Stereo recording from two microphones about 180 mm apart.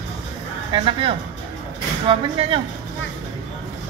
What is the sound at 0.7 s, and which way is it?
Speech, 30° right (ahead or behind).